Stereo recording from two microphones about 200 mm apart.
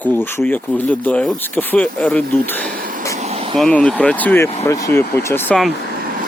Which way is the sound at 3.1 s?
30° right (ahead or behind).